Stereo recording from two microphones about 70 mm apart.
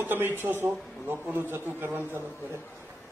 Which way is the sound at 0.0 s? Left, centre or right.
Right.